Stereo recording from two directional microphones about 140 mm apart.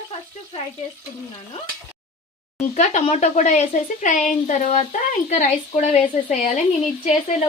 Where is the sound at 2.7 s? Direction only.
60° left (ahead or behind).